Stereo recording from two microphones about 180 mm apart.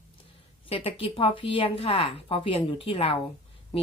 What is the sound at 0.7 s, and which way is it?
Speech, 30° left (ahead or behind).